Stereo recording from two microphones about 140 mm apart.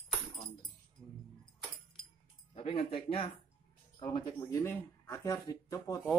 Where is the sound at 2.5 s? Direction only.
45° left (ahead or behind).